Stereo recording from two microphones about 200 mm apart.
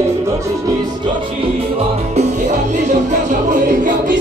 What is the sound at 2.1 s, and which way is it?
Music, 35° right (ahead or behind).